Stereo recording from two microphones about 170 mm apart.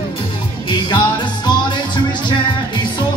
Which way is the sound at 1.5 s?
25° left (ahead or behind).